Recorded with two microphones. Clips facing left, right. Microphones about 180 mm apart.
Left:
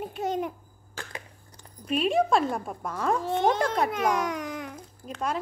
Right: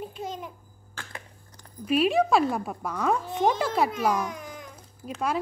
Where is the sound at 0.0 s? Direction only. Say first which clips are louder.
Left 6 dB; 65° left (ahead or behind).